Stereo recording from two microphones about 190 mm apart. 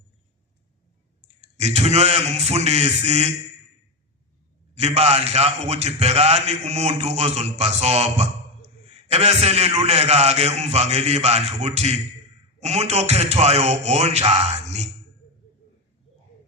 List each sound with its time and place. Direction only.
1.5 s a man's voice: 35° right (ahead or behind)
4.7 s a man's voice: 35° right (ahead or behind)